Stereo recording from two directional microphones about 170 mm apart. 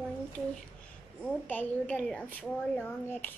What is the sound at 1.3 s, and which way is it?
A child's voice, 10° left (ahead or behind).